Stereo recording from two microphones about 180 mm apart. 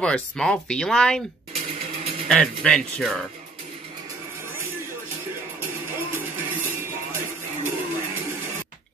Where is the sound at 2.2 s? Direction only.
5° left (ahead or behind).